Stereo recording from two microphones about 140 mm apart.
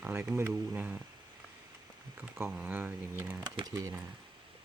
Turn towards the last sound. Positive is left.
turn(degrees=-20)  # may be behind; listen again after turning